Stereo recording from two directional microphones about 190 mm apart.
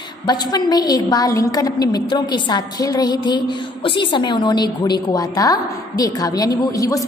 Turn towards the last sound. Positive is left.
turn(degrees=20)  # may be behind; listen again after turning